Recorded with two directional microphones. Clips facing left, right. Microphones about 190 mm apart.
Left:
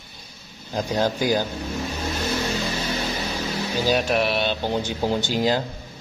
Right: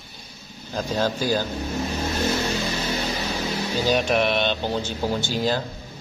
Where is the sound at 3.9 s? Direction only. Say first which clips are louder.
Right 1 dB; centre (ahead or behind).